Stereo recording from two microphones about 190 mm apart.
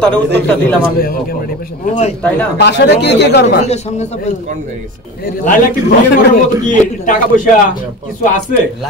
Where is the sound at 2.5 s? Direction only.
65° left (ahead or behind).